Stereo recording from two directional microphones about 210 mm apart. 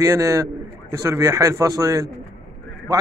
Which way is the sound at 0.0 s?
15° right (ahead or behind).